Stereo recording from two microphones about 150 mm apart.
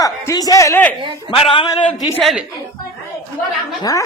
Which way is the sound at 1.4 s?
40° left (ahead or behind).